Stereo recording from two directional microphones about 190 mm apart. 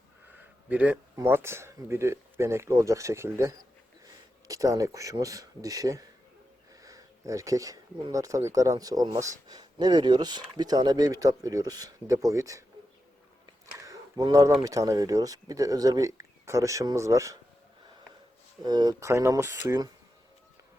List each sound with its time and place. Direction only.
0.7 s speech: 5° right (ahead or behind)
13.7 s a sound: 20° right (ahead or behind)
14.6 s speech: 15° right (ahead or behind)
18.6 s speech: 20° right (ahead or behind)